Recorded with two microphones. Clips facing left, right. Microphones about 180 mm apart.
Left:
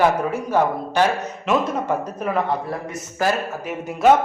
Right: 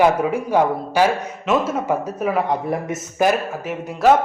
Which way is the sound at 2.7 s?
20° right (ahead or behind).